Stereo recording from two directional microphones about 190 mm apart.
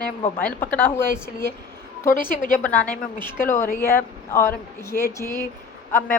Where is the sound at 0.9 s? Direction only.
15° left (ahead or behind).